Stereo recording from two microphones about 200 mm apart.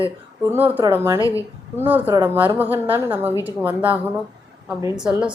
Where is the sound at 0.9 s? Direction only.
15° right (ahead or behind).